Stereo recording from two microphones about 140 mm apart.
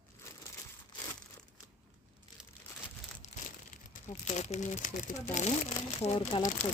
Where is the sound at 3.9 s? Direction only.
65° left (ahead or behind).